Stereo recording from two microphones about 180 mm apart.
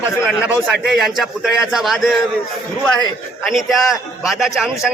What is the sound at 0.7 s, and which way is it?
A man's voice, centre (ahead or behind).